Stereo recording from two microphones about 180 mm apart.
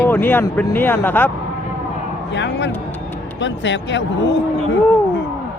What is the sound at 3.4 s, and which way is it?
Speech, 90° left.